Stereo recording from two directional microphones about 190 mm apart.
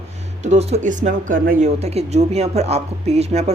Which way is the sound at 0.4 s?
35° right (ahead or behind).